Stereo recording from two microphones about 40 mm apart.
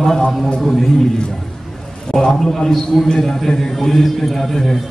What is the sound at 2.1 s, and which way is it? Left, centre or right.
A man's voice, centre.